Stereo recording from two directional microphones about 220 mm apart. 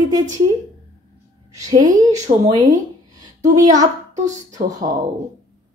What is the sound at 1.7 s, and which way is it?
A woman's voice, 15° right (ahead or behind).